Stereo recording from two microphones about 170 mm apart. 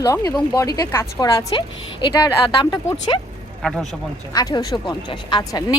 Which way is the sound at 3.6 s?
Centre (ahead or behind).